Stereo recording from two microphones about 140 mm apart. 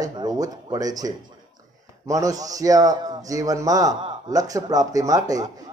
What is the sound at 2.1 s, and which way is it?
A man's voice, 25° right (ahead or behind).